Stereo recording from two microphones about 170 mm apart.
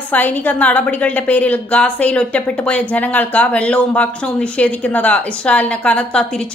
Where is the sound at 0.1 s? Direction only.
10° left (ahead or behind).